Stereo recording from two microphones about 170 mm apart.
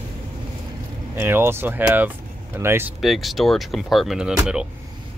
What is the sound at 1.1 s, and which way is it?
Speech, 15° right (ahead or behind).